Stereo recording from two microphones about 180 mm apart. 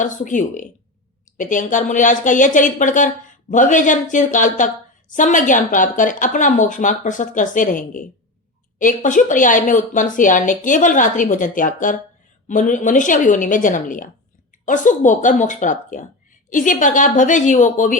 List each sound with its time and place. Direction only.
0.0 s a woman's voice: 45° left (ahead or behind)